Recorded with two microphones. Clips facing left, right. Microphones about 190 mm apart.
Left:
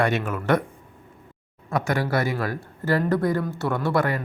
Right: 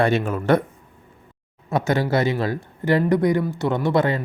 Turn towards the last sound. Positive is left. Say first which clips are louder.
# right 3 dB
turn(degrees=-20)  # may be behind; listen again after turning